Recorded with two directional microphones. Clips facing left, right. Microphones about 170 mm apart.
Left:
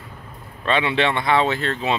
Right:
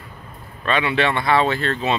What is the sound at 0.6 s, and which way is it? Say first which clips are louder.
Speech: even; 25° left (ahead or behind).